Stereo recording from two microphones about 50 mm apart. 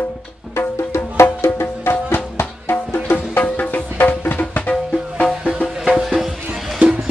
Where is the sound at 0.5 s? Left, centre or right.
Left.